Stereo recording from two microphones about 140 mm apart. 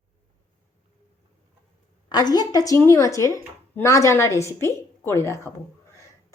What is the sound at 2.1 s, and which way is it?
A woman's voice, 30° left (ahead or behind).